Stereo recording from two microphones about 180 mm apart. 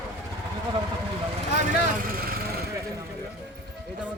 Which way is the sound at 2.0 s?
55° right (ahead or behind).